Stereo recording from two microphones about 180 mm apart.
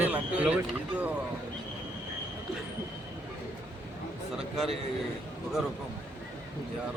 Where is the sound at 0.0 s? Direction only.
10° right (ahead or behind).